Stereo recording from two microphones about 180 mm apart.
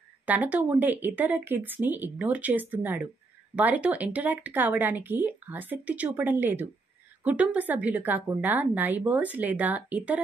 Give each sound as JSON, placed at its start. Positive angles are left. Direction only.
{"t": 0.2, "sound": "speech", "side_deg": -10}